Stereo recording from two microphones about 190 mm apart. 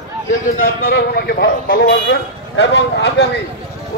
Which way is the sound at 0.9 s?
60° left (ahead or behind).